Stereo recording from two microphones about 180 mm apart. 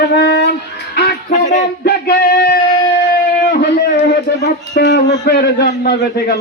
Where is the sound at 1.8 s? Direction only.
60° left (ahead or behind).